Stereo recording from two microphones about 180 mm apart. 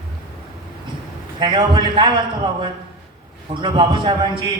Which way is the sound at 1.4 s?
25° right (ahead or behind).